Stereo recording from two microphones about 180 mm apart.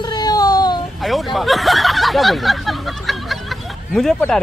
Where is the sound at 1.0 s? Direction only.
Centre (ahead or behind).